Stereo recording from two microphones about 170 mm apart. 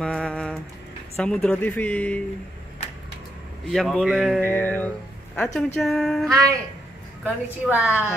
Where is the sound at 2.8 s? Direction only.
40° left (ahead or behind).